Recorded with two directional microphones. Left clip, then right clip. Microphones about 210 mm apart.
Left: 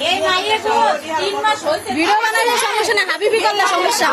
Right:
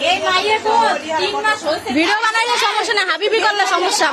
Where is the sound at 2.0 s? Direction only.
40° right (ahead or behind).